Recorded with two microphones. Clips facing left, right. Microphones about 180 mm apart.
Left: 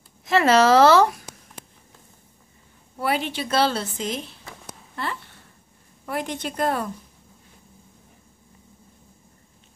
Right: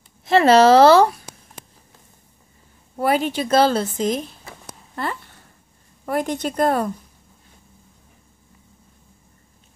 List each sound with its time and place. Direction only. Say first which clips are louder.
0.2 s a woman's voice: right 4 dB; 30° right (ahead or behind)
3.0 s a woman's voice: right 5 dB; 45° right (ahead or behind)